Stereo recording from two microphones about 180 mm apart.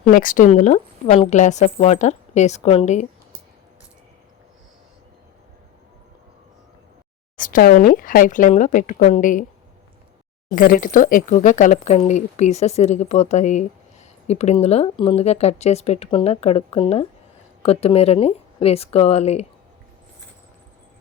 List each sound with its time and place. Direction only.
0.1 s speech: 50° left (ahead or behind)
7.3 s speech: 50° left (ahead or behind)
10.5 s speech: 50° left (ahead or behind)